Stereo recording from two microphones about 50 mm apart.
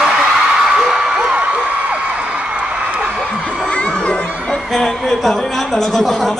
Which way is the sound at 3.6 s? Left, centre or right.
Left.